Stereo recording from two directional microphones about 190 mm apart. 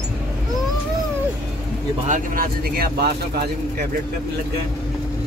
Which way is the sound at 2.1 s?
45° right (ahead or behind).